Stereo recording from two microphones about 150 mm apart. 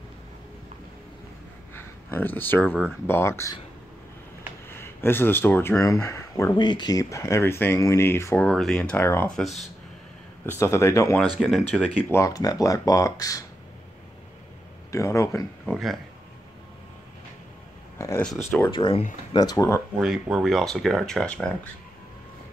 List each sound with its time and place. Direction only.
1.8 s speech: 15° left (ahead or behind)
4.6 s speech: 15° left (ahead or behind)
8.5 s speech: 5° left (ahead or behind)
10.4 s speech: 15° left (ahead or behind)
11.3 s speech: centre (ahead or behind)
12.1 s speech: 20° left (ahead or behind)
14.9 s speech: 20° left (ahead or behind)
15.6 s speech: centre (ahead or behind)
17.9 s speech: 20° left (ahead or behind)
18.7 s speech: 35° left (ahead or behind)
20.0 s speech: 5° right (ahead or behind)